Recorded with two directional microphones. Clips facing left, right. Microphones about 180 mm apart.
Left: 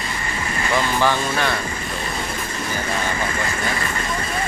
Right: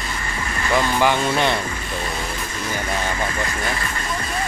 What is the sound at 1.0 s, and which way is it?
Speech, 20° right (ahead or behind).